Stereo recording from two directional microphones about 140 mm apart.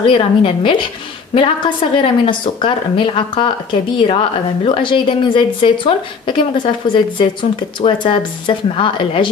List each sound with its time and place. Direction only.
0.0 s a woman's voice: 40° left (ahead or behind)